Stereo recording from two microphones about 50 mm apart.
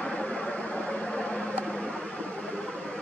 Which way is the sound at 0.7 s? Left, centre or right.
Left.